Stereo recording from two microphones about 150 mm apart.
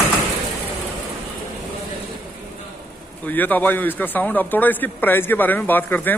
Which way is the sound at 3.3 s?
10° left (ahead or behind).